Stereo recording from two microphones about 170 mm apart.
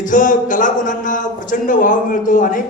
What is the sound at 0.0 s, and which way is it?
A man's voice, 50° left (ahead or behind).